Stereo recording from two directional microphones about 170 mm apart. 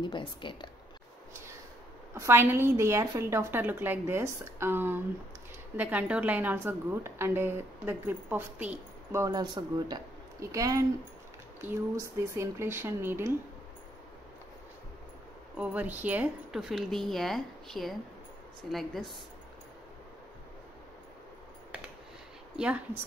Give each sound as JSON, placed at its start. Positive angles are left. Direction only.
{"t": 0.0, "sound": "speech", "side_deg": 30}
{"t": 2.1, "sound": "a woman's voice", "side_deg": -15}
{"t": 15.5, "sound": "speech", "side_deg": -10}